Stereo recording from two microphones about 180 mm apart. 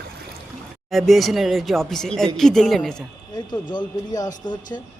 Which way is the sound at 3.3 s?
25° left (ahead or behind).